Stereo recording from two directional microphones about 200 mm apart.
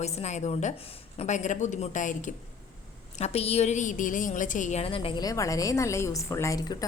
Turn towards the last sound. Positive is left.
turn(degrees=15)  # may be behind; listen again after turning